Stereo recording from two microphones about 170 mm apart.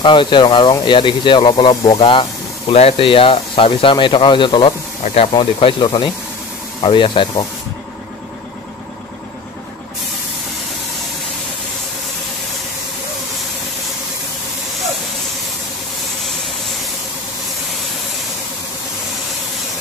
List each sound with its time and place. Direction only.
0.0 s speech: 30° left (ahead or behind)